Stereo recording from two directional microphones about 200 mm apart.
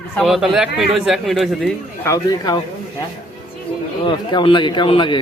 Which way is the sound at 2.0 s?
15° left (ahead or behind).